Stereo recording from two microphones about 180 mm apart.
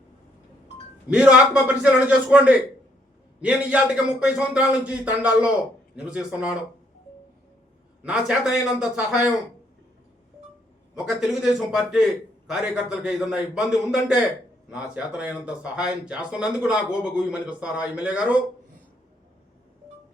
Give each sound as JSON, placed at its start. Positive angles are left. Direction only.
{"t": 1.1, "sound": "a man's voice", "side_deg": -5}
{"t": 8.0, "sound": "speech", "side_deg": -5}
{"t": 10.9, "sound": "speech", "side_deg": -5}